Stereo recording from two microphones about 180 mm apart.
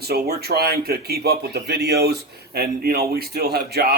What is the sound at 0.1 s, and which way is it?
Speech, 60° right (ahead or behind).